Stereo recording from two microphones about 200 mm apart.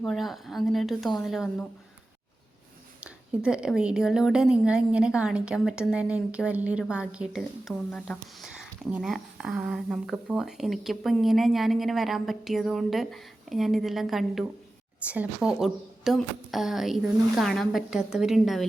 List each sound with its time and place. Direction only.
0.0 s a woman's voice: centre (ahead or behind)
3.0 s a woman's voice: 5° right (ahead or behind)